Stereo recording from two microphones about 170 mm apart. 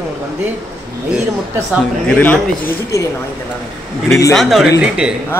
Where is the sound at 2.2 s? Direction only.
10° left (ahead or behind).